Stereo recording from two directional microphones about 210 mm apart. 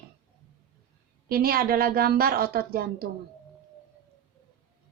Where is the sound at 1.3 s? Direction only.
45° right (ahead or behind).